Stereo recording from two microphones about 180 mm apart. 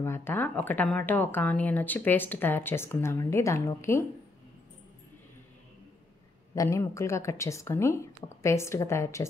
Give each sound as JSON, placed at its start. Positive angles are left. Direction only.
{"t": 0.0, "sound": "speech", "side_deg": 15}
{"t": 6.5, "sound": "speech", "side_deg": 15}